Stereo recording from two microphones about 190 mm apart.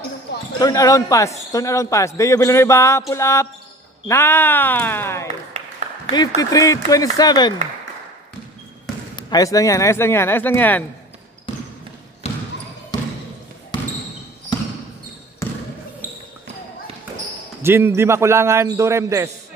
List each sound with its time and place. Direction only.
0.6 s speech: 20° left (ahead or behind)
9.1 s speech: 20° left (ahead or behind)
15.4 s a sound: 15° left (ahead or behind)
17.6 s a man's voice: 10° right (ahead or behind)